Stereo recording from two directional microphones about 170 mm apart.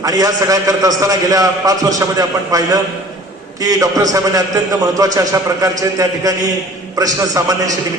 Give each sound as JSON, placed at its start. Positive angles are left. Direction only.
{"t": 0.0, "sound": "a man's voice", "side_deg": -20}